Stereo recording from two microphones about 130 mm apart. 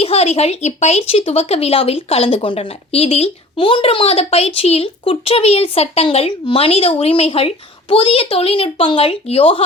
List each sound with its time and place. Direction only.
0.0 s speech: 50° left (ahead or behind)